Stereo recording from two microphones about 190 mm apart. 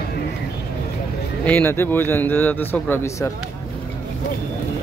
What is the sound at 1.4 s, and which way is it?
A man's voice, 10° left (ahead or behind).